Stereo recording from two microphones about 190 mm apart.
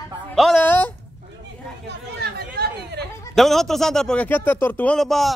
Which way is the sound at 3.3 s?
Centre (ahead or behind).